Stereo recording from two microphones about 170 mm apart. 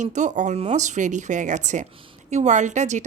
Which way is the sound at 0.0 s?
45° right (ahead or behind).